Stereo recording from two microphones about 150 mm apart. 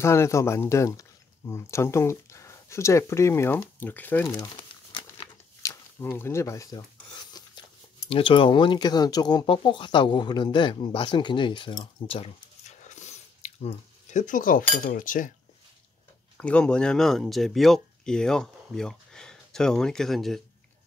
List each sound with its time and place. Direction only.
0.0 s speech: 20° left (ahead or behind)
4.4 s crumpling: 30° left (ahead or behind)
5.6 s speech: 20° left (ahead or behind)
7.3 s a sound: 25° left (ahead or behind)
8.1 s speech: 35° left (ahead or behind); by 15.3 s 65° left (ahead or behind)
16.3 s speech: 5° left (ahead or behind)